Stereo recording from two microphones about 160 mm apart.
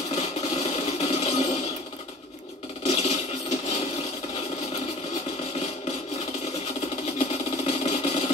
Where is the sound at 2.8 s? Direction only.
40° left (ahead or behind).